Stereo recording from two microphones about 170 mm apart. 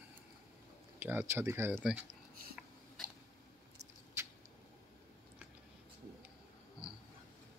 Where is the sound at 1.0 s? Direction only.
10° right (ahead or behind).